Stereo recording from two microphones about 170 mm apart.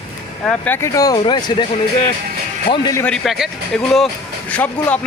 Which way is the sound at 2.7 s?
20° left (ahead or behind).